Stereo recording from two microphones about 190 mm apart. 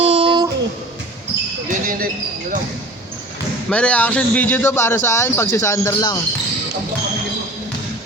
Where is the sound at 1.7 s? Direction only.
45° right (ahead or behind).